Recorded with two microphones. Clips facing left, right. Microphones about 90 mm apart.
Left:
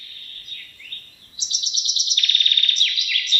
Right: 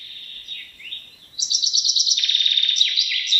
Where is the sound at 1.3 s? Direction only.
5° right (ahead or behind).